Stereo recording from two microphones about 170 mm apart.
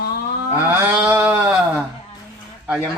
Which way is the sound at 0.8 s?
10° right (ahead or behind).